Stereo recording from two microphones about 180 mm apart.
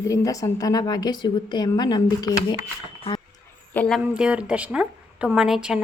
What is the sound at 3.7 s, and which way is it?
Speech, 10° left (ahead or behind).